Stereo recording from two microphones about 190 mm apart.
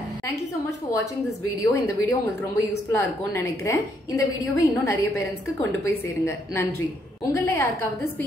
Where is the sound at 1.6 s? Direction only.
15° left (ahead or behind).